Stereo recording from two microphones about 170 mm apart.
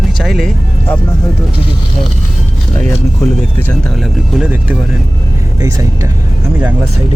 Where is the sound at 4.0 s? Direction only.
5° right (ahead or behind).